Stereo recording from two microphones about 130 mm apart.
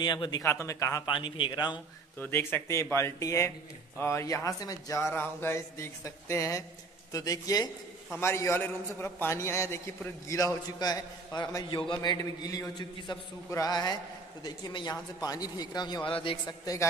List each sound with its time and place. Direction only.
0.0 s speech: 35° left (ahead or behind)
0.4 s a man's voice: 20° left (ahead or behind)
1.0 s speech: 40° left (ahead or behind)
2.1 s a man's voice: 15° left (ahead or behind); by 16.5 s 40° left (ahead or behind)